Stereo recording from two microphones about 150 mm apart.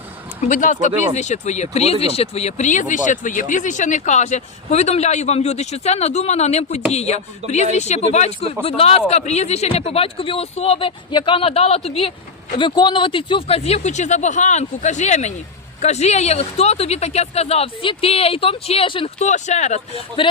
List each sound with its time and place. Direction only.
0.4 s speech: 55° left (ahead or behind); by 19.1 s 35° left (ahead or behind)
19.2 s speech: 50° left (ahead or behind)